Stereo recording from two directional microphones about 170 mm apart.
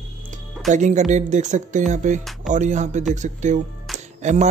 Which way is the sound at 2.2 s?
Centre (ahead or behind).